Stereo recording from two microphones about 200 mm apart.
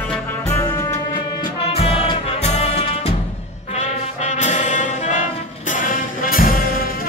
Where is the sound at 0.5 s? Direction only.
15° left (ahead or behind).